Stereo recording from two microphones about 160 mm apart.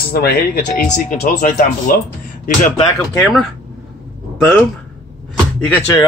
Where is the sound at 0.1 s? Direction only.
75° left (ahead or behind).